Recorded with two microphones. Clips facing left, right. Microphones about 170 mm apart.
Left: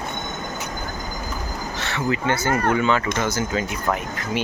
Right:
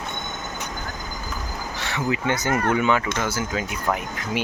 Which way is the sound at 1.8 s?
15° right (ahead or behind).